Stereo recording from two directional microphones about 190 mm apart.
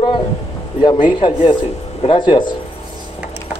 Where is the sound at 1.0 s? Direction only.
25° left (ahead or behind).